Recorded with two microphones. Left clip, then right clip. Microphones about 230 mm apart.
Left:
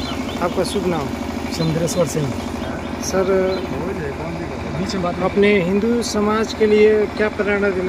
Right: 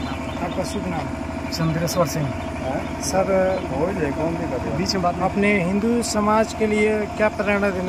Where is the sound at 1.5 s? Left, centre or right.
Centre.